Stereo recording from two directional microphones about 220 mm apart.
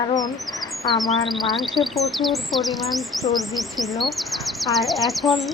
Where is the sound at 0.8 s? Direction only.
20° left (ahead or behind).